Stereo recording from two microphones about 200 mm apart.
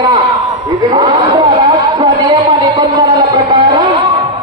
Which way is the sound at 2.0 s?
20° right (ahead or behind).